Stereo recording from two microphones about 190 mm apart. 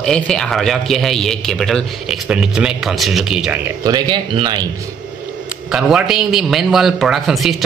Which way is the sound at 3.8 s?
20° right (ahead or behind).